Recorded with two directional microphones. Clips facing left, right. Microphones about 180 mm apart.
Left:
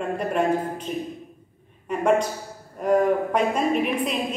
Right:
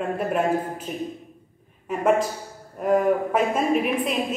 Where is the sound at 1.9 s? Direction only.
5° right (ahead or behind).